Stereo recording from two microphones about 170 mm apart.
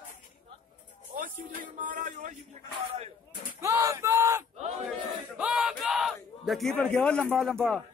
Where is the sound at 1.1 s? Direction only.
50° right (ahead or behind).